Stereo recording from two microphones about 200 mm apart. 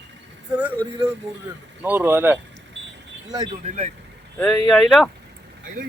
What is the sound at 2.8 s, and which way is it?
Vehicle, 65° right (ahead or behind).